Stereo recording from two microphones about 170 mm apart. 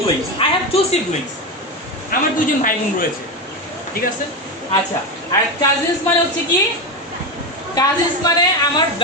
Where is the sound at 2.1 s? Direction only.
55° left (ahead or behind).